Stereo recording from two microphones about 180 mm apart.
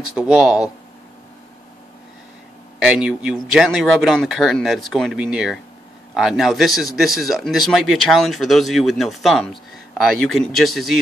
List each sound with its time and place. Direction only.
0.1 s a man's voice: 5° right (ahead or behind)
2.8 s a man's voice: 5° right (ahead or behind)